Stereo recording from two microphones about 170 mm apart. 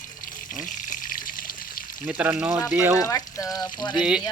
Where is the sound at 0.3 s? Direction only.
50° left (ahead or behind).